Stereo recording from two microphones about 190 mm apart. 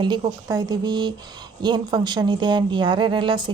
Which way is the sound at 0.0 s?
20° right (ahead or behind).